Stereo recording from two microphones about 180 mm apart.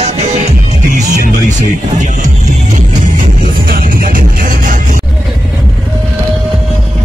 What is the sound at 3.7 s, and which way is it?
Music, 50° right (ahead or behind).